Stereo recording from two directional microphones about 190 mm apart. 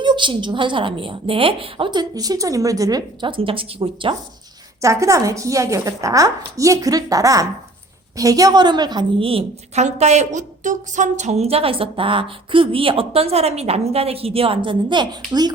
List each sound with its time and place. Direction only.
0.0 s a woman's voice: 25° right (ahead or behind)
4.8 s a woman's voice: 15° right (ahead or behind)